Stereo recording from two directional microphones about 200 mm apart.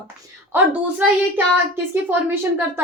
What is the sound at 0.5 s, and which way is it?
Speech, 10° right (ahead or behind).